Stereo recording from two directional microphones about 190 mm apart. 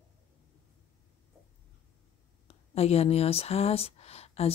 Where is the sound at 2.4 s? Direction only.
35° left (ahead or behind).